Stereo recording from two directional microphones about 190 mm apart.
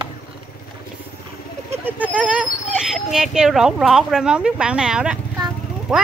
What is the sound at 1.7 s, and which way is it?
Speech, 10° right (ahead or behind).